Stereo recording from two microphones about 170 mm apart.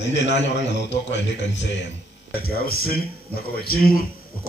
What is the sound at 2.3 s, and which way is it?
Speech, 60° left (ahead or behind).